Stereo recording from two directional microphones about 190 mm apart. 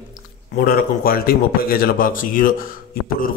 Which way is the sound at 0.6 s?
50° left (ahead or behind).